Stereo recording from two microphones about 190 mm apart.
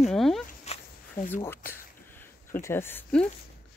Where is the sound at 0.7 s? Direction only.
35° left (ahead or behind).